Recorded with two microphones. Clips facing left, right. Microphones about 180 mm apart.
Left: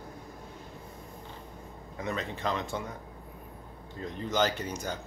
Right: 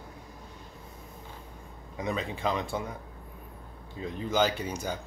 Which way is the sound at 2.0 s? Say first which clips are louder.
Right 2 dB; 10° right (ahead or behind).